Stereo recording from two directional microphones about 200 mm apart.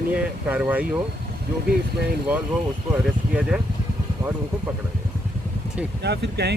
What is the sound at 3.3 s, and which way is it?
Speech, 5° right (ahead or behind).